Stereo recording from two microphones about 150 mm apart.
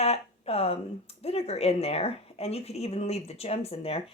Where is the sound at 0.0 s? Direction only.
40° left (ahead or behind).